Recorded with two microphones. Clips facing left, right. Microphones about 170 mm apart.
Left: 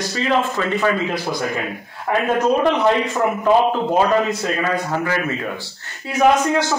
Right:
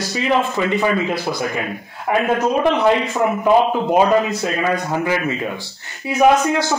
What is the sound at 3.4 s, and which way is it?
Speech, 15° right (ahead or behind).